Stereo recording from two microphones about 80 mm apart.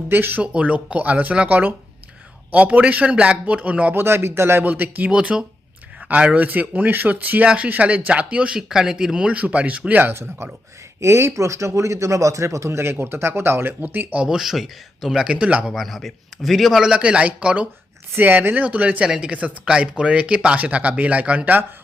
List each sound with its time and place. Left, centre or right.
0.1 s speech: right
3.9 s speech: right
14.2 s speech: centre
15.7 s speech: centre
16.9 s speech: centre